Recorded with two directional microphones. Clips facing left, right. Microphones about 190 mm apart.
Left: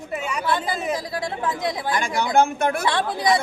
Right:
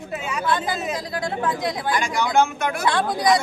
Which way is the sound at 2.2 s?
55° left (ahead or behind).